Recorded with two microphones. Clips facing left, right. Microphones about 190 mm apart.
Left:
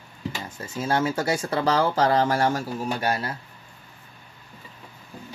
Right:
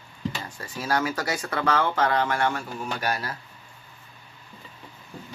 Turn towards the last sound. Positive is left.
turn(degrees=30)  # may be behind; listen again after turning